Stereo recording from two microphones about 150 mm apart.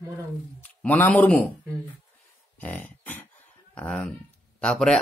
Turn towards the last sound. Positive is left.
turn(degrees=5)  # may be behind; listen again after turning